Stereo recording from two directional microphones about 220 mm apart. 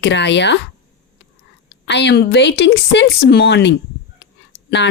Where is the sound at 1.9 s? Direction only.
50° left (ahead or behind).